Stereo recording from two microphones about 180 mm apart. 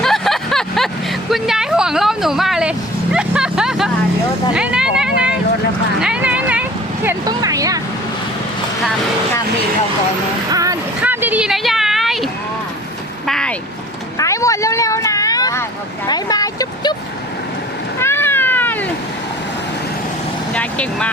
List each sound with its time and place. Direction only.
0.0 s vehicle: centre (ahead or behind)
1.3 s speech: 5° right (ahead or behind)
6.0 s vehicle: 5° right (ahead or behind)
7.3 s speech: 20° right (ahead or behind)
10.5 s a sound: 20° right (ahead or behind); by 12.3 s centre (ahead or behind)
13.2 s vehicle: 5° left (ahead or behind)
14.2 s vehicle: 15° left (ahead or behind)
16.0 s a sound: 20° left (ahead or behind)
18.0 s cat: 10° left (ahead or behind)
20.5 s vehicle: 5° left (ahead or behind)